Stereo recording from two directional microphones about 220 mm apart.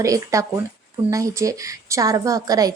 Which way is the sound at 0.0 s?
15° right (ahead or behind).